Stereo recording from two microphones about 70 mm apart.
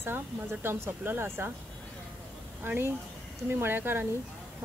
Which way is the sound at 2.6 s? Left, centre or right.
Right.